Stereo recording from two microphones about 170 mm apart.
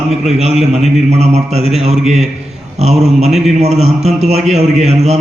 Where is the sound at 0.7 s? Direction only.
40° right (ahead or behind).